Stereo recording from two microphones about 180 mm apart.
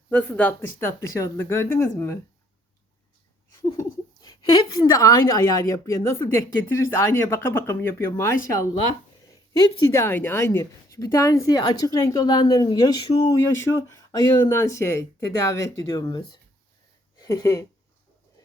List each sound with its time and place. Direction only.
0.1 s a woman's voice: 5° left (ahead or behind)
4.2 s a woman's voice: 20° left (ahead or behind)
9.5 s a woman's voice: 20° left (ahead or behind)
13.4 s speech: 90° left
13.8 s a woman's voice: 20° left (ahead or behind)